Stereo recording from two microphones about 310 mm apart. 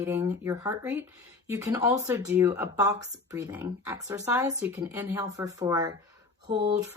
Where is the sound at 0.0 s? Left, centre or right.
Centre.